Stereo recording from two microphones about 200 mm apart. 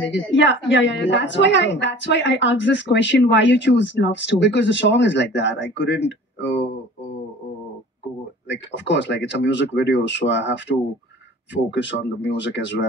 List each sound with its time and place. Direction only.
0.1 s a woman's voice: 65° left (ahead or behind)
8.5 s a woman's voice: 65° left (ahead or behind)